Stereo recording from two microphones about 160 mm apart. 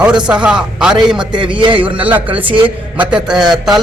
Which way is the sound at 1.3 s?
30° right (ahead or behind).